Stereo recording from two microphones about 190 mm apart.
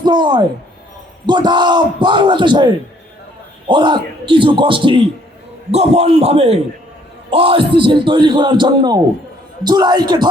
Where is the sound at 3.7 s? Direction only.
25° right (ahead or behind).